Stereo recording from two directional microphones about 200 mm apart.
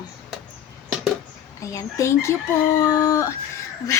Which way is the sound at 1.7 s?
15° left (ahead or behind).